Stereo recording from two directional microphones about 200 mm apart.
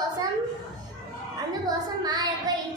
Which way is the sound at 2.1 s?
20° right (ahead or behind).